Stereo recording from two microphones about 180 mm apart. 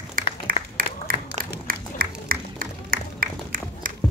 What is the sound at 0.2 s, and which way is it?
Applause, 50° right (ahead or behind).